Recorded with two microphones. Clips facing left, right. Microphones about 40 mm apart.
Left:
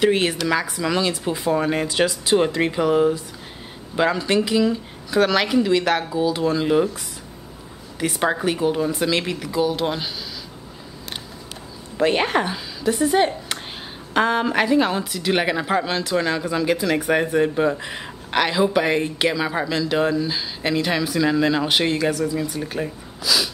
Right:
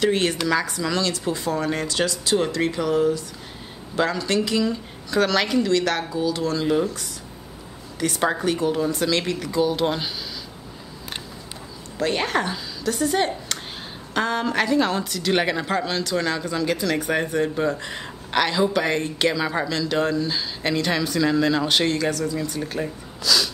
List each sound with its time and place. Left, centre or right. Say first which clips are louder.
0.0 s a woman's voice: left 2 dB; centre
8.0 s a woman's voice: left 1 dB; centre
12.0 s a woman's voice: left 4 dB; centre